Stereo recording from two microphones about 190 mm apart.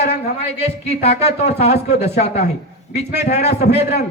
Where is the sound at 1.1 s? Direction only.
60° left (ahead or behind).